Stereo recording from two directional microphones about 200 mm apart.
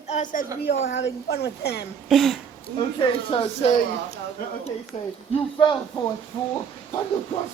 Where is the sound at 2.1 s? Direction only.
Centre (ahead or behind).